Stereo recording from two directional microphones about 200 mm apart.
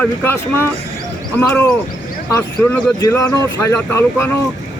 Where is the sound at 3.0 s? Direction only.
15° left (ahead or behind).